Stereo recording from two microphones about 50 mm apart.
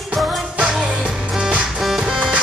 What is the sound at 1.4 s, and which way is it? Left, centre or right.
Music, centre.